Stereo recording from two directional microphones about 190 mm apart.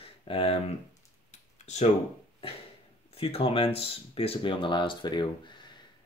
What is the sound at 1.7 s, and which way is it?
Speech, 35° left (ahead or behind).